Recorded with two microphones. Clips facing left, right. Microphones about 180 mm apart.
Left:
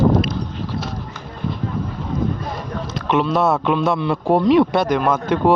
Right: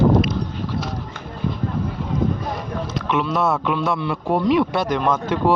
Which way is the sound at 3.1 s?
30° left (ahead or behind).